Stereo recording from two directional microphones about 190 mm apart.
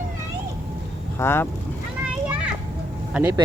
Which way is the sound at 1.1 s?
10° left (ahead or behind).